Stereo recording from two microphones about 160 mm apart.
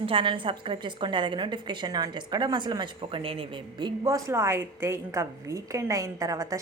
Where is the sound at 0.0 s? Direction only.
35° right (ahead or behind).